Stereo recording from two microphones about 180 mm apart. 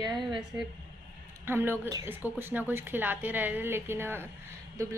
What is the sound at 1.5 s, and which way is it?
A woman's voice, 15° right (ahead or behind).